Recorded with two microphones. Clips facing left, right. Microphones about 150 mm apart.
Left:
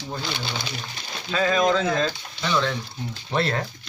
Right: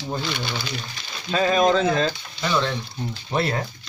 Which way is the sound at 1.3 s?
25° right (ahead or behind).